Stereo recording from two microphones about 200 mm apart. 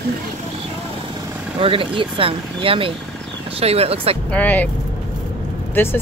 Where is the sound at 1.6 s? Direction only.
25° right (ahead or behind).